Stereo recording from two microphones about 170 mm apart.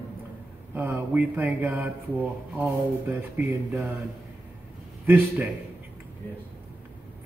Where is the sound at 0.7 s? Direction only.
10° right (ahead or behind).